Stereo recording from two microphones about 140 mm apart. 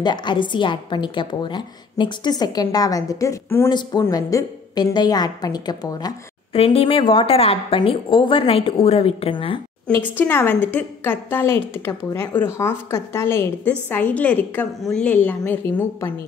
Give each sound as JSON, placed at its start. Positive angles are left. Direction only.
{"t": 0.0, "sound": "a woman's voice", "side_deg": 30}
{"t": 6.5, "sound": "a woman's voice", "side_deg": 45}
{"t": 10.1, "sound": "a woman's voice", "side_deg": 15}